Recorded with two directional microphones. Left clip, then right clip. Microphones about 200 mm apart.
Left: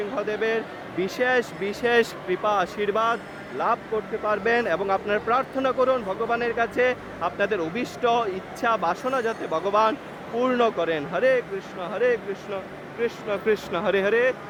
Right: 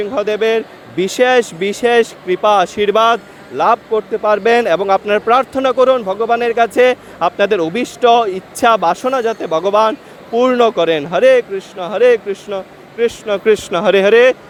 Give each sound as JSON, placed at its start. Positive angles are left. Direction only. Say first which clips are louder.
{"t": 0.1, "sound": "speech", "louder": "right 12 dB", "side_deg": -35}